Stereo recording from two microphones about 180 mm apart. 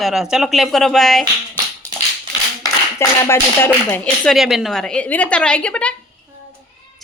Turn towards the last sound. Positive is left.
turn(degrees=5)  # may be behind; listen again after turning